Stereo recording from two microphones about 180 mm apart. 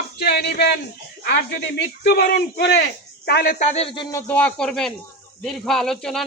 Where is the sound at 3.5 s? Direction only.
40° left (ahead or behind).